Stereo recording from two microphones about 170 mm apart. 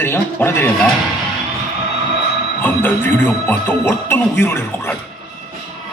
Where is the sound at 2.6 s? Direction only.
10° left (ahead or behind).